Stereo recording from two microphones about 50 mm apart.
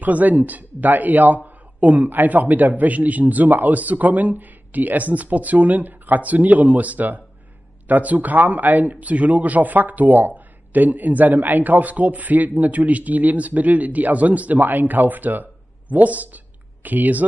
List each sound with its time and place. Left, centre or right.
0.0 s speech: right